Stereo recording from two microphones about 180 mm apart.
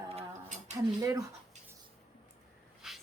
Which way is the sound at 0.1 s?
35° right (ahead or behind).